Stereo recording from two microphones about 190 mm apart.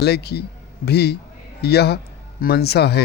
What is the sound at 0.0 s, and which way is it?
Speech, 60° left (ahead or behind).